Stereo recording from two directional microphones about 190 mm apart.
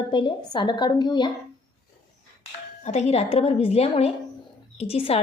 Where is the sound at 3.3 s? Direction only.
30° left (ahead or behind).